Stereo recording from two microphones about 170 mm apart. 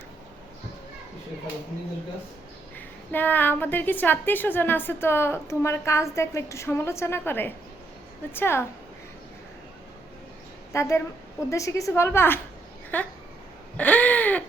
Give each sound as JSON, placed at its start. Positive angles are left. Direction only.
{"t": 2.7, "sound": "a woman's voice", "side_deg": 10}
{"t": 10.7, "sound": "a woman's voice", "side_deg": 20}